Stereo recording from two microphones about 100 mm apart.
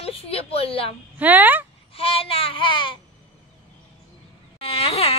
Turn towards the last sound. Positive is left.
turn(degrees=80)